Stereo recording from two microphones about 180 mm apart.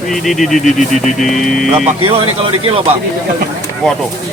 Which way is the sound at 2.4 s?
30° right (ahead or behind).